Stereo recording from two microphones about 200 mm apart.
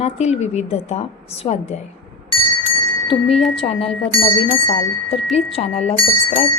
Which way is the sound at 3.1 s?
30° left (ahead or behind).